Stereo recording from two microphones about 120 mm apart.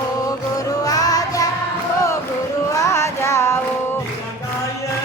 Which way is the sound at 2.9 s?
25° left (ahead or behind).